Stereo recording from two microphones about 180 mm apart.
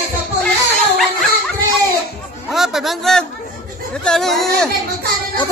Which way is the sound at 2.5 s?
Centre (ahead or behind).